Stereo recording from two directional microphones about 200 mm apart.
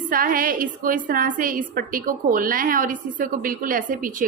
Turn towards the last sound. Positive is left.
turn(degrees=-45)  # may be behind; listen again after turning